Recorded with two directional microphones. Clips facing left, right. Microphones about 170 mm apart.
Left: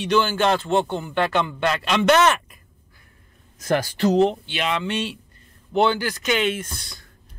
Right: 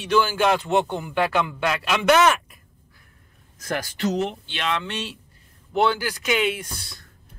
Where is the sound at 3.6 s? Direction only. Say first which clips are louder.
Left 5 dB; 30° left (ahead or behind).